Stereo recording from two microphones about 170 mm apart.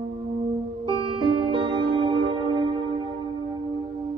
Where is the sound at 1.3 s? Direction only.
30° right (ahead or behind).